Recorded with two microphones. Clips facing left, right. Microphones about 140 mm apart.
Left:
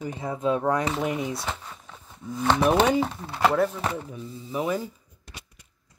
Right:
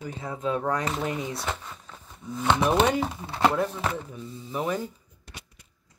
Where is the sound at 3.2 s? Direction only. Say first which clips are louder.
Right 2 dB; 20° right (ahead or behind).